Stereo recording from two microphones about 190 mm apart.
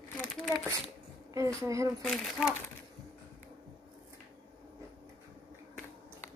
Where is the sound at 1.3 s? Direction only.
15° right (ahead or behind).